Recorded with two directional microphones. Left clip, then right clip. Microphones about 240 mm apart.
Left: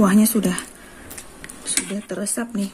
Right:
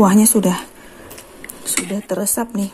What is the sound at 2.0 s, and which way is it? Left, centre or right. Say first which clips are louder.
Speech: right 6 dB; centre.